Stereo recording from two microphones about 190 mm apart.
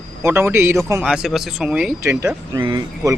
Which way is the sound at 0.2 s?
10° right (ahead or behind).